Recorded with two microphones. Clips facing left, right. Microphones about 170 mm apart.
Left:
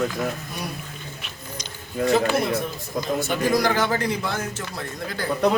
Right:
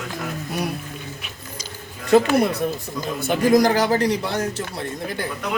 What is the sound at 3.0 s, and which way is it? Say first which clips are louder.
A man's voice: even; 45° right (ahead or behind).